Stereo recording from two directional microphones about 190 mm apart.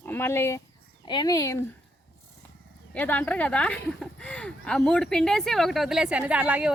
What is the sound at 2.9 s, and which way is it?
Speech, 10° left (ahead or behind).